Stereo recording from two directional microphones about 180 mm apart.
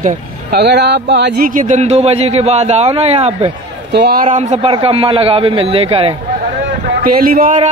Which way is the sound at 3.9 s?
65° right (ahead or behind).